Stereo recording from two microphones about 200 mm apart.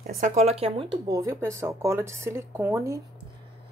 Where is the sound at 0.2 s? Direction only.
35° right (ahead or behind).